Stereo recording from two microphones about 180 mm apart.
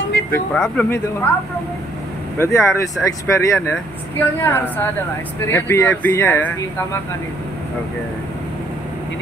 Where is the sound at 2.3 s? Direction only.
15° left (ahead or behind).